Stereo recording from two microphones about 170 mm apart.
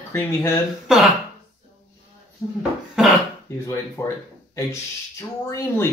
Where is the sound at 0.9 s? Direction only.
5° right (ahead or behind).